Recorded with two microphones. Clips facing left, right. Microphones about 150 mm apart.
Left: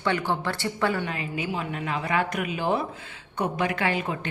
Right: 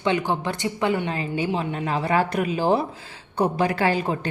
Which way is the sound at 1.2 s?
30° right (ahead or behind).